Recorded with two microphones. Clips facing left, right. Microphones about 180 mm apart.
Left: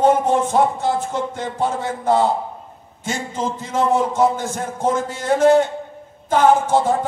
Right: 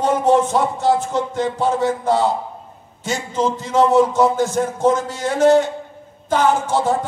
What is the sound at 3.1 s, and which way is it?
A man's voice, 50° left (ahead or behind).